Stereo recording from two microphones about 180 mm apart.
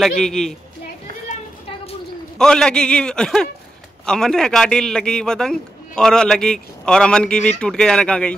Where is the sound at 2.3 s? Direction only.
5° left (ahead or behind).